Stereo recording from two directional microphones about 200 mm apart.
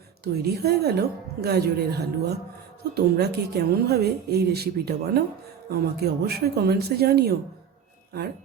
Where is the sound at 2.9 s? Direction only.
50° right (ahead or behind).